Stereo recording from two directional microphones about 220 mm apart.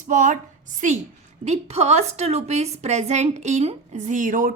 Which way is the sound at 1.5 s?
30° right (ahead or behind).